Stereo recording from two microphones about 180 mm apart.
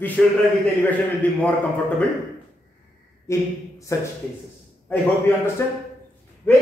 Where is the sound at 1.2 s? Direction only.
10° left (ahead or behind).